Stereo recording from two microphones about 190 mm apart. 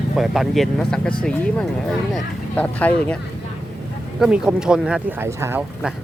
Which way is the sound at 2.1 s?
10° left (ahead or behind).